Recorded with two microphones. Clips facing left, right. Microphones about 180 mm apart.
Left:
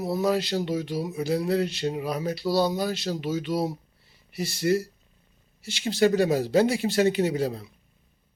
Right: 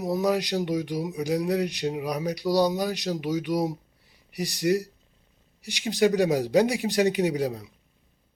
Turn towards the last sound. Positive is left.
turn(degrees=-15)  # may be behind; listen again after turning